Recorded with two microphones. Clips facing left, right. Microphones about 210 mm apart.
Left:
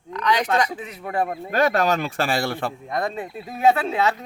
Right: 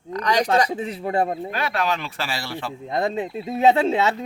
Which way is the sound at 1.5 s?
45° left (ahead or behind).